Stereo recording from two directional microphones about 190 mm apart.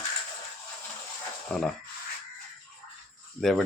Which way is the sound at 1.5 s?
5° left (ahead or behind).